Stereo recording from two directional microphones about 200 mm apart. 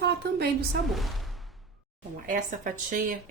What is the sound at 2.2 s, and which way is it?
Speech, 40° right (ahead or behind).